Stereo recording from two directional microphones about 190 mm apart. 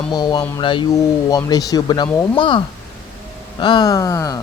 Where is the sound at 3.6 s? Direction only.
20° left (ahead or behind).